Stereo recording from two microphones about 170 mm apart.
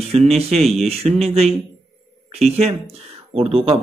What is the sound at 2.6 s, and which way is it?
Speech, 35° right (ahead or behind).